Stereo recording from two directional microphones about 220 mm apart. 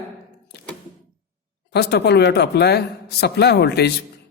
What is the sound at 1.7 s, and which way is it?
A man's voice, 50° left (ahead or behind).